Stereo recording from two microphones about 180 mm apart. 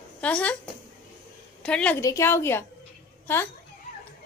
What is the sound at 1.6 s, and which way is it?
A woman's voice, 5° left (ahead or behind).